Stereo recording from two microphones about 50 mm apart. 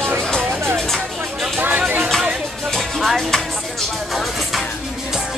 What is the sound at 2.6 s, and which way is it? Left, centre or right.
Music, centre.